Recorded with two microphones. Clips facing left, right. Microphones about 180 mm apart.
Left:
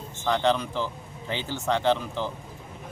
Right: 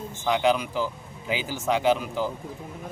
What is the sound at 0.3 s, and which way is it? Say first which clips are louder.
Speech: right 1 dB; 10° right (ahead or behind).